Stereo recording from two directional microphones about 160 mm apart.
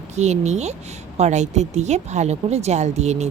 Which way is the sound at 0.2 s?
45° right (ahead or behind).